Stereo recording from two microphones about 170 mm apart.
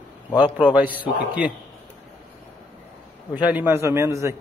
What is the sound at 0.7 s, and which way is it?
Speech, 10° right (ahead or behind).